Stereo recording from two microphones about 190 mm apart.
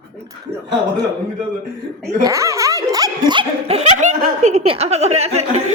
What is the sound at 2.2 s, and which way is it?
A woman's voice, 15° right (ahead or behind).